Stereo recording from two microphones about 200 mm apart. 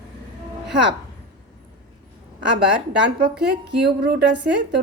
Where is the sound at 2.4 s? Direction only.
60° right (ahead or behind).